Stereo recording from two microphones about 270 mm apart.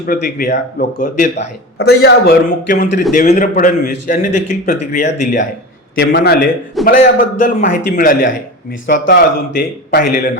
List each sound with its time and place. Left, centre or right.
0.0 s a man's voice: left